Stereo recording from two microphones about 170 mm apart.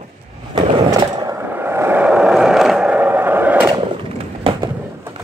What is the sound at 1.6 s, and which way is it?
Vehicle, 15° right (ahead or behind).